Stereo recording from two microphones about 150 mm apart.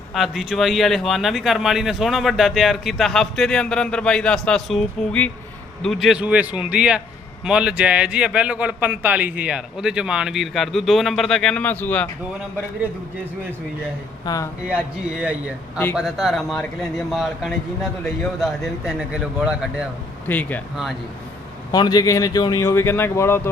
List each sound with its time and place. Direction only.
0.1 s a man's voice: centre (ahead or behind)
14.3 s speech: 25° left (ahead or behind)
15.2 s a man's voice: 10° right (ahead or behind)
20.2 s speech: 10° left (ahead or behind)
21.7 s speech: 25° left (ahead or behind)